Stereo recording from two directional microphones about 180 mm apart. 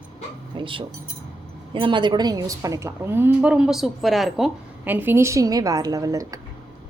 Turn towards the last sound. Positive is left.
turn(degrees=-20)  # may be behind; listen again after turning